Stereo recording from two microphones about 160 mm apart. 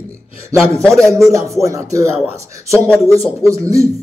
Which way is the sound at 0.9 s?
20° right (ahead or behind).